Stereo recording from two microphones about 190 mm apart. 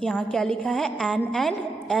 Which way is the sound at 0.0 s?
Centre (ahead or behind).